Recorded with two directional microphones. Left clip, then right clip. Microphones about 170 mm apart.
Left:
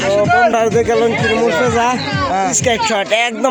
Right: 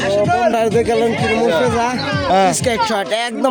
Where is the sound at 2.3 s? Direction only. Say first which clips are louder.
Right 5 dB; 80° right.